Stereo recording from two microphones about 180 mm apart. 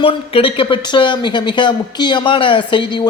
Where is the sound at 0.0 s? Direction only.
30° left (ahead or behind).